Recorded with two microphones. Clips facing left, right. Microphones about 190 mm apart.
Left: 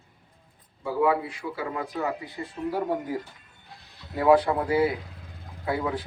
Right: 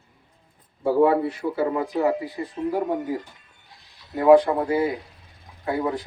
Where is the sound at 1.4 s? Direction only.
35° right (ahead or behind).